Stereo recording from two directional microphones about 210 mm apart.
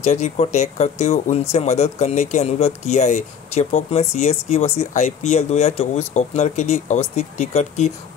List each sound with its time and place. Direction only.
0.0 s speech: 35° left (ahead or behind)